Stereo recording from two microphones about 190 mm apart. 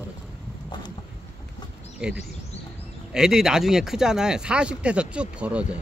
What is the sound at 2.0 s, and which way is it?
Speech, 5° right (ahead or behind).